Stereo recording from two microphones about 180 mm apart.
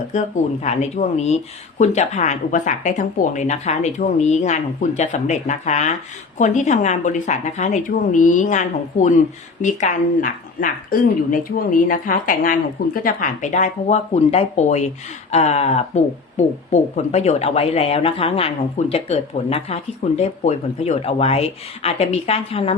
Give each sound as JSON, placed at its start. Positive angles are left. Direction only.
{"t": 0.1, "sound": "a woman's voice", "side_deg": 40}